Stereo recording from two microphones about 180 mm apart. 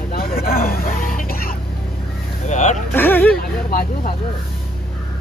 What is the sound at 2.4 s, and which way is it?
Speech, 40° left (ahead or behind).